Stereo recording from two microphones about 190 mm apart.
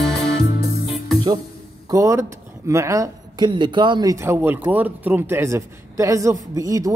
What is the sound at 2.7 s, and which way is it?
Speech, 15° right (ahead or behind).